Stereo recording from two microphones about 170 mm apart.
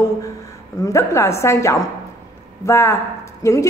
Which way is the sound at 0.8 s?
15° left (ahead or behind).